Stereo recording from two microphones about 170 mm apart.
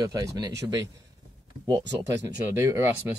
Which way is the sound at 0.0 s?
20° right (ahead or behind).